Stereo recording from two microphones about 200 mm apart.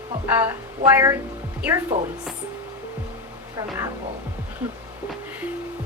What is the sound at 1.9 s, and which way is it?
Speech, 30° right (ahead or behind).